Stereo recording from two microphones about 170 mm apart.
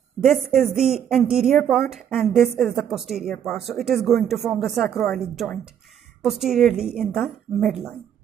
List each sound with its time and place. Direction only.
0.2 s a woman's voice: centre (ahead or behind)